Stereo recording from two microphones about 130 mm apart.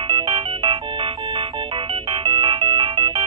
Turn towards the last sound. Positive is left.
turn(degrees=-40)  # may be behind; listen again after turning